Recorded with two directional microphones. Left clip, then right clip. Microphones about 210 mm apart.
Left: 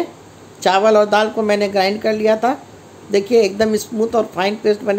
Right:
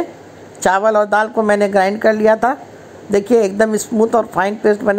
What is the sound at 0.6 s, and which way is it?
Speech, 15° right (ahead or behind).